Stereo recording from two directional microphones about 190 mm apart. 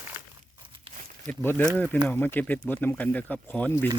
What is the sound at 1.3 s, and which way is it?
Speech, 10° left (ahead or behind).